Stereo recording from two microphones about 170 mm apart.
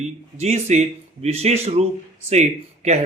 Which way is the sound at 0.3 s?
40° right (ahead or behind).